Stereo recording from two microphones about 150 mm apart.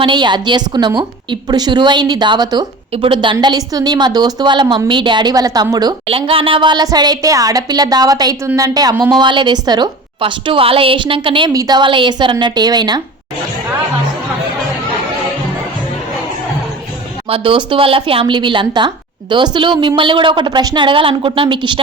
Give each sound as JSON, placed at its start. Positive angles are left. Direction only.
{"t": 0.0, "sound": "a woman's voice", "side_deg": -30}
{"t": 6.1, "sound": "a woman's voice", "side_deg": -40}
{"t": 17.2, "sound": "a woman's voice", "side_deg": -35}